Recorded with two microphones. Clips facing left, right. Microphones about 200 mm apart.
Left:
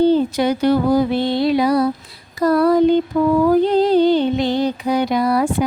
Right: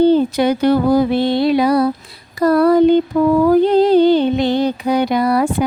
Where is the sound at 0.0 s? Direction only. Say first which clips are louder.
Right 2 dB; 60° right (ahead or behind).